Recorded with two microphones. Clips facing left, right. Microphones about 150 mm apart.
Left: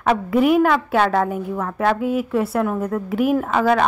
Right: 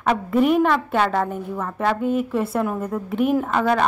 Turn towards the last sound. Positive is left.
turn(degrees=5)  # may be behind; listen again after turning